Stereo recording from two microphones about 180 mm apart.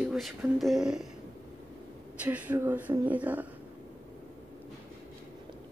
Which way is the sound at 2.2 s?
10° right (ahead or behind).